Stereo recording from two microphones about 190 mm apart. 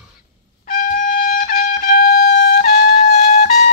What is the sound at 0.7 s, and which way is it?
Trumpet, 45° left (ahead or behind).